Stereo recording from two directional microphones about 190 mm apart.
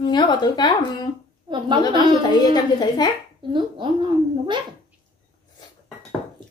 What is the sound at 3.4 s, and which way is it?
Speech, 25° right (ahead or behind).